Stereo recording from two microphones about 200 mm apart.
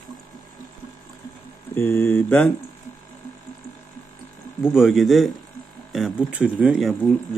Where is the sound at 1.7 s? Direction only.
10° left (ahead or behind).